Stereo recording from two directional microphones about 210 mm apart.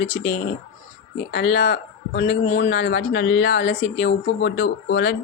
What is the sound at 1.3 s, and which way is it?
Speech, 55° left (ahead or behind).